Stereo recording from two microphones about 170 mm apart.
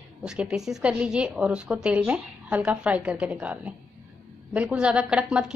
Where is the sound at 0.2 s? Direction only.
5° right (ahead or behind).